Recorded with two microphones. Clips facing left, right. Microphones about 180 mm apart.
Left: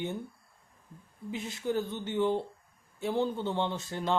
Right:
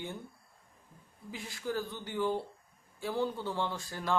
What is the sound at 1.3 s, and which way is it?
A man's voice, 20° left (ahead or behind).